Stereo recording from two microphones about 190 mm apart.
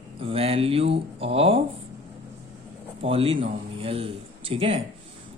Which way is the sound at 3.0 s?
30° right (ahead or behind).